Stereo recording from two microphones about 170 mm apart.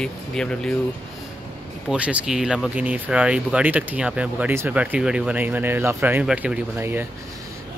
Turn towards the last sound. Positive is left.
turn(degrees=-10)  # may be behind; listen again after turning